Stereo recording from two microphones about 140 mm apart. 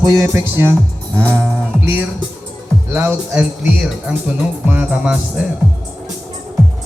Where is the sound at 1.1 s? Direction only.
10° left (ahead or behind).